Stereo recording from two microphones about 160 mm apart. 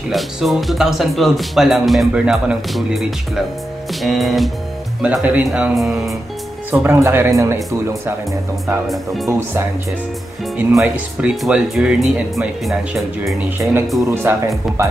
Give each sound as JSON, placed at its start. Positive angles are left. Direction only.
{"t": 0.1, "sound": "speech", "side_deg": 0}
{"t": 6.7, "sound": "speech", "side_deg": -15}
{"t": 8.8, "sound": "speech", "side_deg": 0}
{"t": 10.7, "sound": "speech", "side_deg": -5}
{"t": 14.3, "sound": "speech", "side_deg": -15}